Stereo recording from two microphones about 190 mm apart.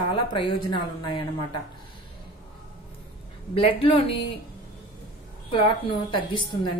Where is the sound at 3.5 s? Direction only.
30° left (ahead or behind).